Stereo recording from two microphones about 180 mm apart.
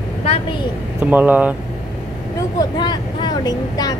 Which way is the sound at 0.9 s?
10° right (ahead or behind).